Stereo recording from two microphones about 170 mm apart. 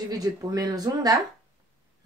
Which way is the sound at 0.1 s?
20° right (ahead or behind).